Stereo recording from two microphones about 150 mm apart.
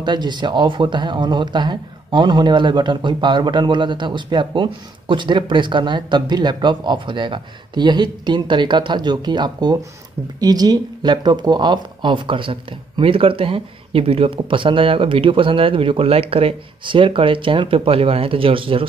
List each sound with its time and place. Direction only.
0.0 s speech: 30° right (ahead or behind)